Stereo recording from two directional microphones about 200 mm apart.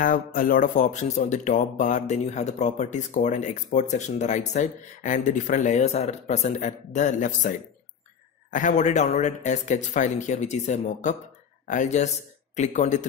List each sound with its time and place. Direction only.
0.0 s speech: 40° left (ahead or behind)